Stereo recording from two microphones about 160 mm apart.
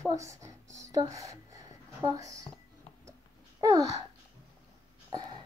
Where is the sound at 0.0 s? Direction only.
20° right (ahead or behind).